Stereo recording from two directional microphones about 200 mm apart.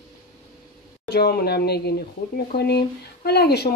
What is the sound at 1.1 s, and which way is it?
Speech, 50° left (ahead or behind).